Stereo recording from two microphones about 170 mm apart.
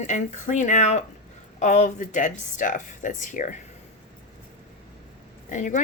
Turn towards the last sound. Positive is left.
turn(degrees=45)  # may be behind; listen again after turning